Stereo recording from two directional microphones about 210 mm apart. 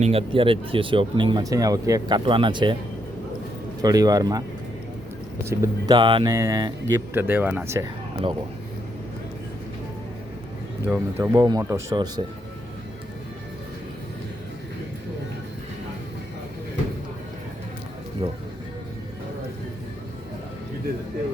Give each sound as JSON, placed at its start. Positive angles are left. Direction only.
{"t": 0.0, "sound": "speech", "side_deg": -25}
{"t": 3.8, "sound": "speech", "side_deg": -20}
{"t": 5.5, "sound": "speech", "side_deg": -15}
{"t": 10.8, "sound": "speech", "side_deg": -10}
{"t": 18.2, "sound": "speech", "side_deg": -25}